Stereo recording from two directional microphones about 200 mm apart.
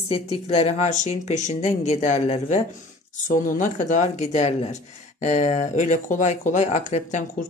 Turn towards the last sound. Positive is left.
turn(degrees=35)  # may be behind; listen again after turning